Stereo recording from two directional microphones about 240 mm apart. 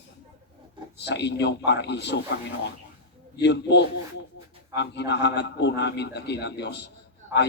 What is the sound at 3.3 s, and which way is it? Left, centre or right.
A man's voice, left.